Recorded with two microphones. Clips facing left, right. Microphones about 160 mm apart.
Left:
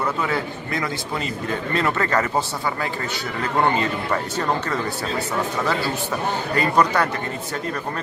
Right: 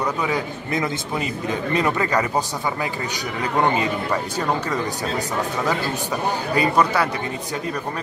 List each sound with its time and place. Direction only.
0.0 s a man's voice: 15° right (ahead or behind)
6.5 s a man's voice: 10° right (ahead or behind)